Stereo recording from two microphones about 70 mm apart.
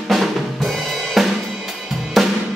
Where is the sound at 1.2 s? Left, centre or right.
Centre.